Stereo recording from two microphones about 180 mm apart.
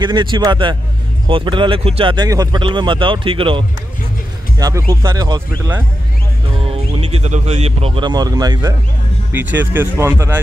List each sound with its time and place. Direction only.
0.0 s speech: 25° right (ahead or behind)
7.0 s speech: 35° right (ahead or behind)
9.3 s speech: 10° right (ahead or behind)